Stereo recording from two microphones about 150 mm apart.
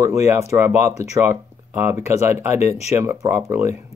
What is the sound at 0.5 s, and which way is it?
Speech, 15° right (ahead or behind).